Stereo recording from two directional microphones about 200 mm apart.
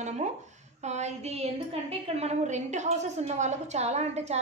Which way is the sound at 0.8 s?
35° right (ahead or behind).